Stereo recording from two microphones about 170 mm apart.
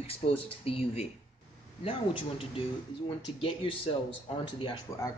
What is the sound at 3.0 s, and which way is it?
Speech, 30° left (ahead or behind).